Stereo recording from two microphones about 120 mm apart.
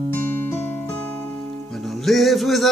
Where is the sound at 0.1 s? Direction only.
15° left (ahead or behind).